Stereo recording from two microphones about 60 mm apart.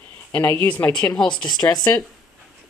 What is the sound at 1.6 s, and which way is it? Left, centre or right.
Speech, left.